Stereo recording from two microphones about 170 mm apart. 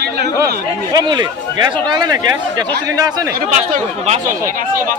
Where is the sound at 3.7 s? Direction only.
40° right (ahead or behind).